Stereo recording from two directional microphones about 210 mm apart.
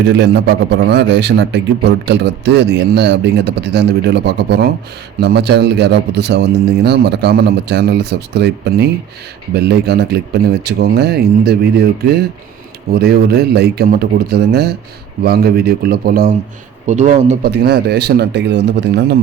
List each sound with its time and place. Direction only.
0.0 s a man's voice: 55° right (ahead or behind)
16.8 s a man's voice: 35° right (ahead or behind)
17.4 s a man's voice: 50° right (ahead or behind)